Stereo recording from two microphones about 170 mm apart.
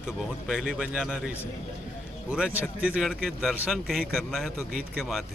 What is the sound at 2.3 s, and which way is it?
Speech, 10° right (ahead or behind).